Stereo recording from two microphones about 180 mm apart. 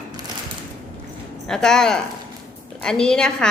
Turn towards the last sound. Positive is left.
turn(degrees=5)  # may be behind; listen again after turning